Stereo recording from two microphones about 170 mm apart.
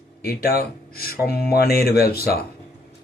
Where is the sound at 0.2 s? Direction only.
65° left (ahead or behind).